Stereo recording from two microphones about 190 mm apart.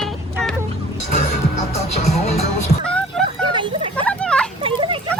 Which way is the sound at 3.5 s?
25° right (ahead or behind).